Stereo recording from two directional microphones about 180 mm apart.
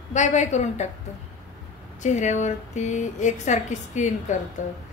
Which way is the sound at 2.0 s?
40° left (ahead or behind).